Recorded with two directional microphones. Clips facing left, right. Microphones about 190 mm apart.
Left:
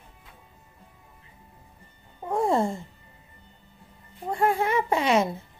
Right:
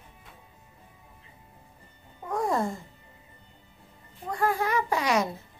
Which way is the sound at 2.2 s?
25° left (ahead or behind).